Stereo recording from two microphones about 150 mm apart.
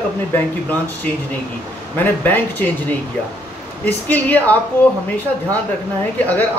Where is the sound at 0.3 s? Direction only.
10° left (ahead or behind).